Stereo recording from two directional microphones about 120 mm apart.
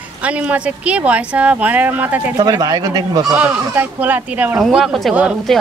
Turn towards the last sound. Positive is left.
turn(degrees=0)  # may be behind; listen again after turning